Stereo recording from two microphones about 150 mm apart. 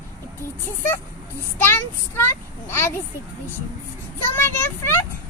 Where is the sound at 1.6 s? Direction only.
15° left (ahead or behind).